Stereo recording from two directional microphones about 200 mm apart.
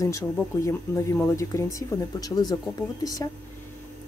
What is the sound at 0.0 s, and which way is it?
Speech, 15° left (ahead or behind).